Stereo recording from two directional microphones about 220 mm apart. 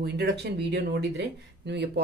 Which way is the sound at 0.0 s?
50° right (ahead or behind).